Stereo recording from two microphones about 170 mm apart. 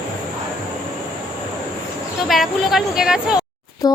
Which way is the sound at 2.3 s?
Centre (ahead or behind).